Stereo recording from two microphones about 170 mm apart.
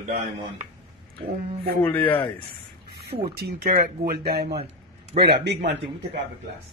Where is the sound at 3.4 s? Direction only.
60° right (ahead or behind).